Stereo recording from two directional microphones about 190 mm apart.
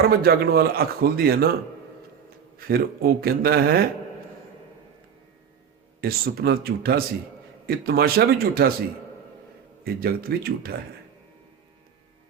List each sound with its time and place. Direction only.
0.1 s a man's voice: 55° right (ahead or behind)
2.6 s a man's voice: 50° right (ahead or behind)
6.0 s a man's voice: 50° right (ahead or behind)
9.8 s a man's voice: 50° right (ahead or behind)